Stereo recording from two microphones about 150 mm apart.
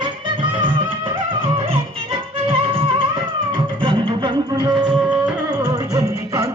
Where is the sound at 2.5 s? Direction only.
35° right (ahead or behind).